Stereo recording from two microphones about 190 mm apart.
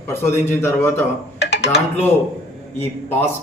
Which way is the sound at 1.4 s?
65° left (ahead or behind).